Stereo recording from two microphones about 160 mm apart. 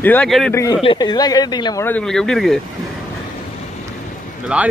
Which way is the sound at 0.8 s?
30° left (ahead or behind).